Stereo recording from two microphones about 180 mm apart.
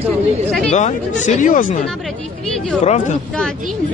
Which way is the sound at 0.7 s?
40° left (ahead or behind).